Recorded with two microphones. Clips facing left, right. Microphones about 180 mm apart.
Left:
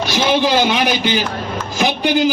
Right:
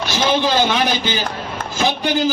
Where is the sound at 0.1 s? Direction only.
15° left (ahead or behind).